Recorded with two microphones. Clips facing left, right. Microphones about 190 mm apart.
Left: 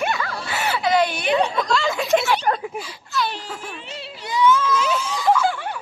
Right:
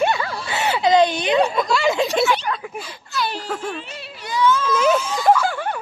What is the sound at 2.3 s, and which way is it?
Speech, 45° left (ahead or behind).